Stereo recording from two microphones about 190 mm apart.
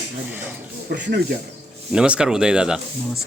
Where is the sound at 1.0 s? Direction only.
60° right (ahead or behind).